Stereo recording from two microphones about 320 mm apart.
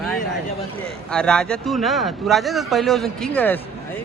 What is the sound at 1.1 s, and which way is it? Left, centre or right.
Speech, centre.